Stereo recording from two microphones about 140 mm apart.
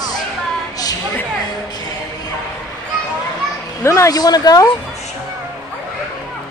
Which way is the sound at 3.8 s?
20° left (ahead or behind).